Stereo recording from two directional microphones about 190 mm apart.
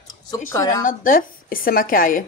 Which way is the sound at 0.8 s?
45° left (ahead or behind).